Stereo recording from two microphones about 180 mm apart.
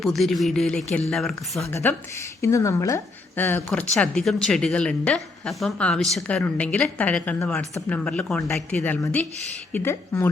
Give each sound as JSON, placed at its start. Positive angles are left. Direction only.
{"t": 0.0, "sound": "speech", "side_deg": 0}
{"t": 1.7, "sound": "speech", "side_deg": 10}